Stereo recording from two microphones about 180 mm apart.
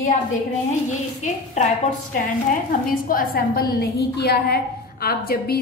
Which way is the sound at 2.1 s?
50° left (ahead or behind).